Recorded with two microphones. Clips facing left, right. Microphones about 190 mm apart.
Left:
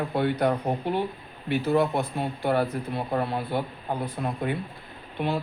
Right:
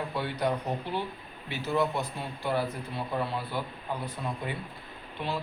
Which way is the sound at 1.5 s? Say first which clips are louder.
Left 6 dB; 55° left (ahead or behind).